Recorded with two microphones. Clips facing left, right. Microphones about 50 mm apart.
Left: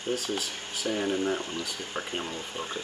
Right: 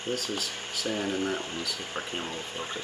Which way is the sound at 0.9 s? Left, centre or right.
Centre.